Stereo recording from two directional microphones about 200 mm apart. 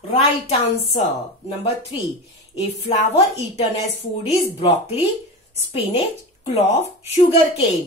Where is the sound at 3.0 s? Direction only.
30° left (ahead or behind).